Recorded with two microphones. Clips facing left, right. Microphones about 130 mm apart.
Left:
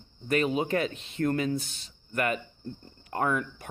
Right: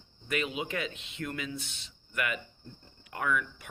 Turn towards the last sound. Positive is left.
turn(degrees=35)  # may be behind; listen again after turning